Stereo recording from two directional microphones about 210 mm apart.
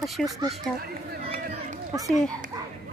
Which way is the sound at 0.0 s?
Centre (ahead or behind).